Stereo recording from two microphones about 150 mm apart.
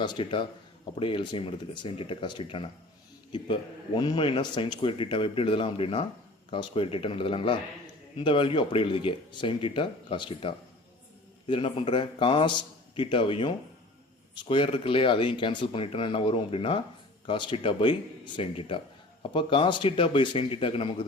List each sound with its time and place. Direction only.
0.0 s a man's voice: 30° left (ahead or behind)